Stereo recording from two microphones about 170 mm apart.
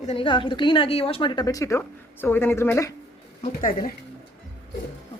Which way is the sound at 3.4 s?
55° left (ahead or behind).